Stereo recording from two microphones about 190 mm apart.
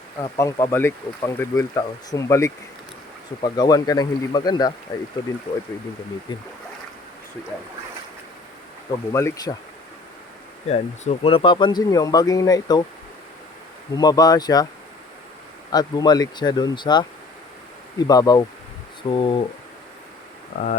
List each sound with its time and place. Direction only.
0.2 s speech: 20° left (ahead or behind)
9.1 s speech: 15° left (ahead or behind)
10.7 s speech: 35° left (ahead or behind); by 12.8 s 20° left (ahead or behind)
13.9 s speech: 20° left (ahead or behind)
15.7 s speech: 20° left (ahead or behind)
18.1 s speech: 20° left (ahead or behind)